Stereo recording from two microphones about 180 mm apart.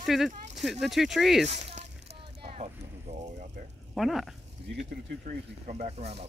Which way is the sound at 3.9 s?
Centre (ahead or behind).